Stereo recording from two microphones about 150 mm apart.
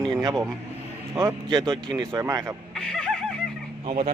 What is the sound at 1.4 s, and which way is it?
Speech, 30° right (ahead or behind).